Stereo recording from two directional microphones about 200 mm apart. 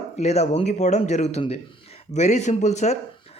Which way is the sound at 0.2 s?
35° left (ahead or behind).